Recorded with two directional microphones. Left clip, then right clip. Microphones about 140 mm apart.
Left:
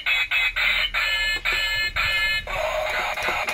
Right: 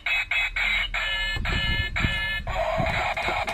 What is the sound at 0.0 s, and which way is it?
Chicken, 15° right (ahead or behind).